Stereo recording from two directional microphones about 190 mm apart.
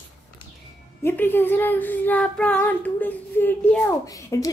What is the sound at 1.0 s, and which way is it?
A woman's voice, 10° left (ahead or behind).